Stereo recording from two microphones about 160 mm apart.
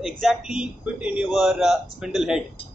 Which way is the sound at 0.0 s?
Centre (ahead or behind).